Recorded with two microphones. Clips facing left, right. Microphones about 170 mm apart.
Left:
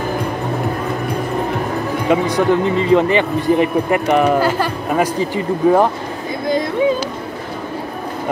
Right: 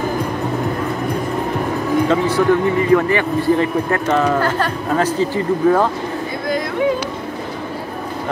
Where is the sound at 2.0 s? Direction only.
15° left (ahead or behind).